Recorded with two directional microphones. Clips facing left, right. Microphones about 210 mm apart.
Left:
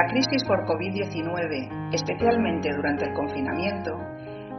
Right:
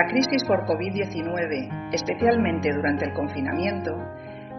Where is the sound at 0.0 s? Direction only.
20° right (ahead or behind).